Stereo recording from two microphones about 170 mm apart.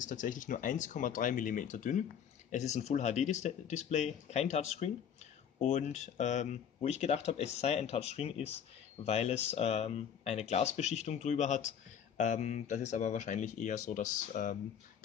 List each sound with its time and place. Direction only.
0.0 s speech: 50° left (ahead or behind)